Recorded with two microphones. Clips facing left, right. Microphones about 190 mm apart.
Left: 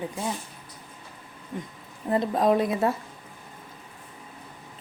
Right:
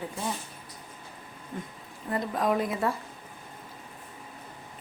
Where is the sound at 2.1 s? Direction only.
25° left (ahead or behind).